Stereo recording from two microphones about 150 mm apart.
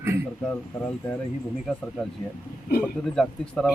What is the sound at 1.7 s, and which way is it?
Speech, 5° left (ahead or behind).